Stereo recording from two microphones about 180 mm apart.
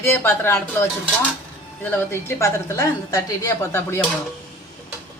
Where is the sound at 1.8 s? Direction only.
10° left (ahead or behind).